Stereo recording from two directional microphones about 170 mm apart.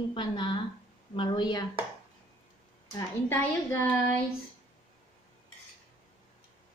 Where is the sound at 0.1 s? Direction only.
25° left (ahead or behind).